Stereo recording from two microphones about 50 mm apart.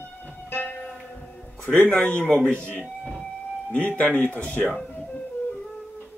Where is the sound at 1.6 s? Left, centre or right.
Left.